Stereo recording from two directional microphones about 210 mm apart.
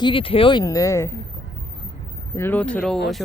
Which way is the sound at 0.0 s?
25° left (ahead or behind).